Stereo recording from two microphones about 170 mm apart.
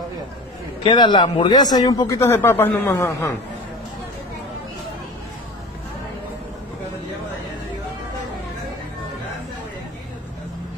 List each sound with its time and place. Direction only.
0.8 s speech: 25° left (ahead or behind)